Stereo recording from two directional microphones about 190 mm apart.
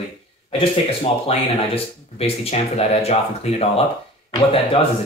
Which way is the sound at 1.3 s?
30° left (ahead or behind).